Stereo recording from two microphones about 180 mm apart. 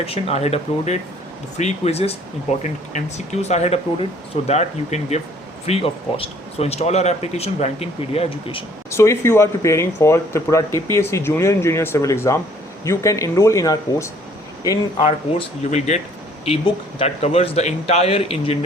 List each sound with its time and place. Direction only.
0.0 s speech: 35° left (ahead or behind)
8.9 s speech: 15° left (ahead or behind)
15.0 s speech: 35° left (ahead or behind)
17.0 s speech: 35° left (ahead or behind)